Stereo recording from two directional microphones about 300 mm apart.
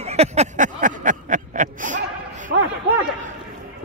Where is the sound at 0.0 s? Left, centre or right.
Right.